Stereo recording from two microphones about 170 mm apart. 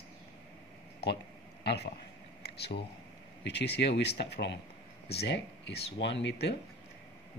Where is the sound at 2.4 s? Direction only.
75° left (ahead or behind).